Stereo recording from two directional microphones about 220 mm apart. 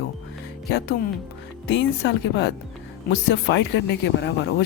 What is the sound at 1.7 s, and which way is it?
A woman's voice, 55° left (ahead or behind).